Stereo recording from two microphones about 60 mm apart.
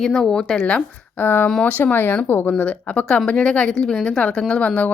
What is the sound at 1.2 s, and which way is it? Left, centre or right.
Speech, left.